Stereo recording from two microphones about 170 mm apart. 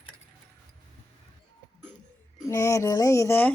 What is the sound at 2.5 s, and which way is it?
Speech, 20° left (ahead or behind).